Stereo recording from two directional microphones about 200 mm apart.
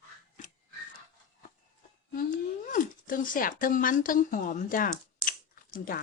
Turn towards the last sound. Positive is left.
turn(degrees=45)  # may be behind; listen again after turning